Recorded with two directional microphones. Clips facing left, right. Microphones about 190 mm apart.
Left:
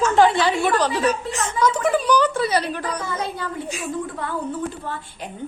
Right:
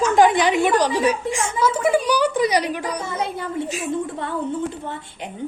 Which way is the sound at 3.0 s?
25° right (ahead or behind).